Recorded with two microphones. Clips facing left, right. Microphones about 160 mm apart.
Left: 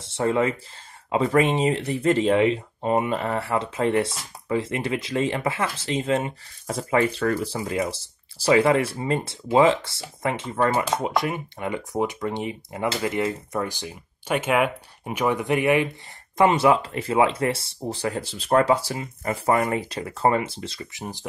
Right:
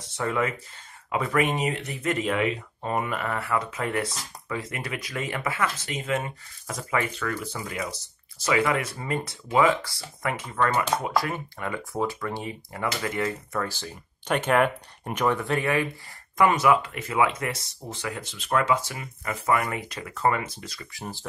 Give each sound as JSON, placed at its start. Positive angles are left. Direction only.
{"t": 0.0, "sound": "speech", "side_deg": 30}
{"t": 21.0, "sound": "speech", "side_deg": 15}